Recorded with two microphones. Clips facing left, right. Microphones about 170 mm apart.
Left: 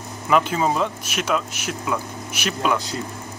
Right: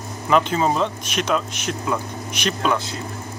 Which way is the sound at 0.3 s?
5° left (ahead or behind).